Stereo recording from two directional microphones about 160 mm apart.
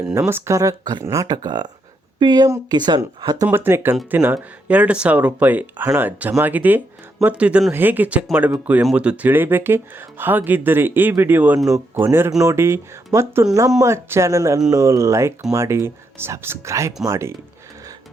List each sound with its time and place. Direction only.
0.1 s speech: 15° right (ahead or behind)